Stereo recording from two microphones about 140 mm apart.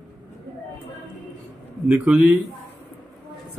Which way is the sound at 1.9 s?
15° right (ahead or behind).